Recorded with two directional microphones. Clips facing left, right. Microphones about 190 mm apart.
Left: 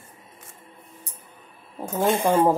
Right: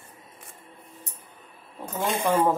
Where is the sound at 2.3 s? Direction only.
30° left (ahead or behind).